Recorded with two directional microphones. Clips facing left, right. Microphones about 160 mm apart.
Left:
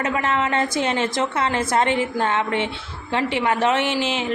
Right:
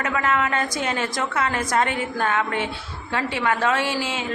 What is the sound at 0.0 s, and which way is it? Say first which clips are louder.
A woman's voice: left 1 dB; 25° left (ahead or behind).